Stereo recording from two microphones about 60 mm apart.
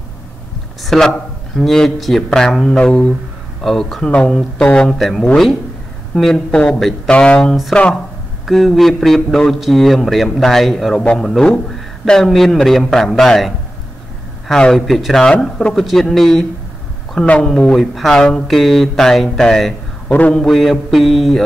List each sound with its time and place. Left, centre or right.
0.8 s a man's voice: centre
3.6 s a man's voice: centre
4.0 s speech: centre
4.8 s a man's voice: centre
6.5 s speech: centre
8.5 s a man's voice: centre
14.5 s a man's voice: centre
17.3 s speech: centre
17.7 s a man's voice: centre
18.1 s speech: centre
18.5 s a man's voice: centre
20.1 s a man's voice: left
20.3 s a man's voice: centre